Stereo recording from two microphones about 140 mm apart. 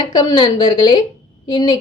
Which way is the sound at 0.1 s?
30° left (ahead or behind).